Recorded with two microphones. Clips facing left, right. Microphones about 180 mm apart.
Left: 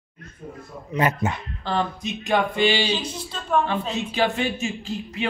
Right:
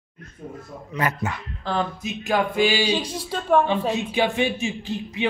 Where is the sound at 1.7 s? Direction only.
5° right (ahead or behind).